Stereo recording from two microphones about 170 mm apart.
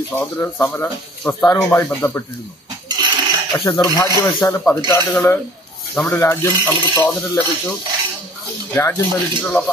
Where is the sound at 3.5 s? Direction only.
20° left (ahead or behind).